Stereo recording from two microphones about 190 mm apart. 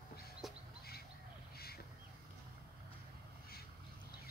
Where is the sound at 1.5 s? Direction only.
55° left (ahead or behind).